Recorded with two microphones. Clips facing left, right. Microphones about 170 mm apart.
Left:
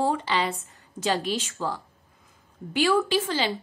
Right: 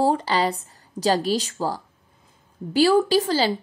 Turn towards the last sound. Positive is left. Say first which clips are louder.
# right 5 dB
turn(degrees=-35)  # may be behind; listen again after turning